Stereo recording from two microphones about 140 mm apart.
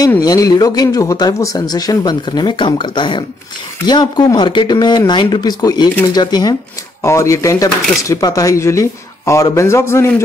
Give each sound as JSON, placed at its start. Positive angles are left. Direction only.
{"t": 0.2, "sound": "speech", "side_deg": 25}